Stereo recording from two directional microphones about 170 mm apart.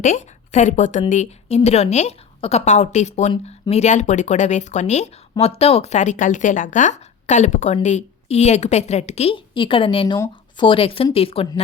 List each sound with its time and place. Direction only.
0.0 s a woman's voice: 45° left (ahead or behind)